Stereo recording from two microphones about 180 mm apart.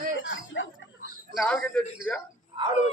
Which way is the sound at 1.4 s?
5° left (ahead or behind).